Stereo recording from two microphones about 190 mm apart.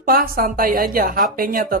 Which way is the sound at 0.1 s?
50° right (ahead or behind).